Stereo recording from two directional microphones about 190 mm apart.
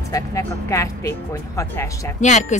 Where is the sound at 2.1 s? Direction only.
40° left (ahead or behind).